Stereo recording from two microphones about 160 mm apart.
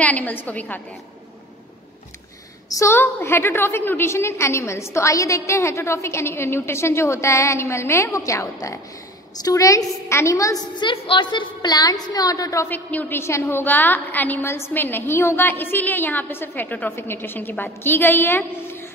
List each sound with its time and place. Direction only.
0.0 s a woman's voice: 10° left (ahead or behind)
2.7 s a woman's voice: 15° left (ahead or behind)